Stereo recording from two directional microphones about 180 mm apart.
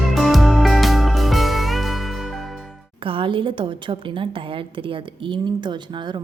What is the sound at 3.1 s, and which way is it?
A woman's voice, 30° right (ahead or behind).